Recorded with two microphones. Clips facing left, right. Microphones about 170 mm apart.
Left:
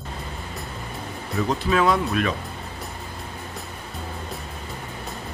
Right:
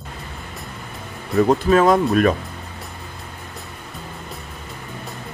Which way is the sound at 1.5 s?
45° right (ahead or behind).